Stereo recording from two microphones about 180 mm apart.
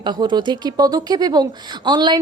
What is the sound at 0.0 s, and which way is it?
Speech, 25° right (ahead or behind).